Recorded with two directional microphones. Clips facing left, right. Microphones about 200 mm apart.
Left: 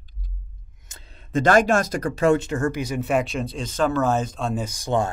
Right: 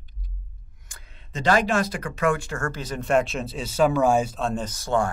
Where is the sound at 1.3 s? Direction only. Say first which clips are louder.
Left 4 dB; 50° left (ahead or behind).